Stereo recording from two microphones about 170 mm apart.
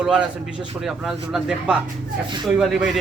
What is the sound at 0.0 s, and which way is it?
Speech, 5° right (ahead or behind).